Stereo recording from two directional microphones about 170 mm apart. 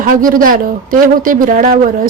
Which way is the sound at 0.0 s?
55° right (ahead or behind).